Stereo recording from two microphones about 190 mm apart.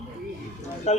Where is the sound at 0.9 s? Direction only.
35° left (ahead or behind).